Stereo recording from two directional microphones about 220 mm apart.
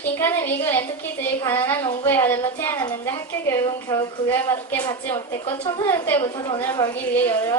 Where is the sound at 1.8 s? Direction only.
20° left (ahead or behind).